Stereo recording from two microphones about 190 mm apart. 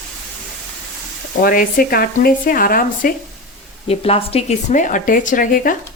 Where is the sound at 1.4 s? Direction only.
50° left (ahead or behind).